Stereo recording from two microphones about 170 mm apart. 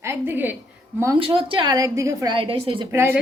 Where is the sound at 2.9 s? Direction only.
15° right (ahead or behind).